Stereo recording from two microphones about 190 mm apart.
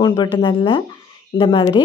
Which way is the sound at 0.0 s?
20° left (ahead or behind).